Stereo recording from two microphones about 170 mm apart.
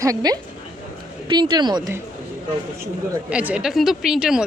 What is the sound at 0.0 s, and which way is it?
Speech, 20° right (ahead or behind).